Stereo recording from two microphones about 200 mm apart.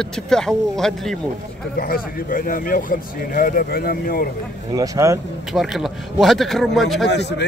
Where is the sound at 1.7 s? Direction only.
45° left (ahead or behind).